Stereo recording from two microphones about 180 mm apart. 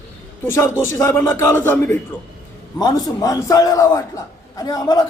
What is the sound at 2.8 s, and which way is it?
A man's voice, 20° left (ahead or behind).